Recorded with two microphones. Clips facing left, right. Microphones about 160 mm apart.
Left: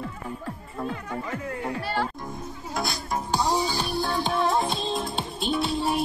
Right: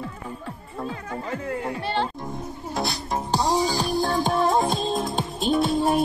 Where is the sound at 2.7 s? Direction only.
30° right (ahead or behind).